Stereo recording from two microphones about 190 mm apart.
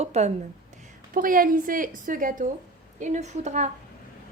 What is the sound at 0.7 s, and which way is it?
A woman's voice, 45° right (ahead or behind).